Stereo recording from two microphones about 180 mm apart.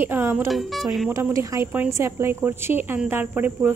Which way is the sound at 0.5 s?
Centre (ahead or behind).